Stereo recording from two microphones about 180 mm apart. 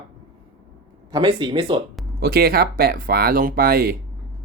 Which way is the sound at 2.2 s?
60° right (ahead or behind).